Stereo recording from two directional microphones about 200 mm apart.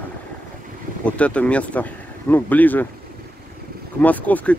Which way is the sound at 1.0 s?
5° left (ahead or behind).